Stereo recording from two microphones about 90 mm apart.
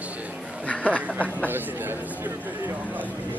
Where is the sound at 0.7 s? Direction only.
15° left (ahead or behind).